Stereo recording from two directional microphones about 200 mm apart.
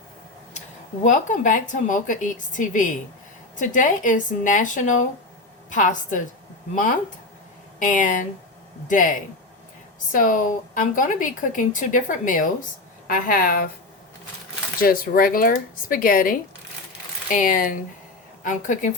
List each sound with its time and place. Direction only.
1.0 s speech: 40° left (ahead or behind)
7.8 s speech: 40° left (ahead or behind)
14.8 s speech: 45° left (ahead or behind)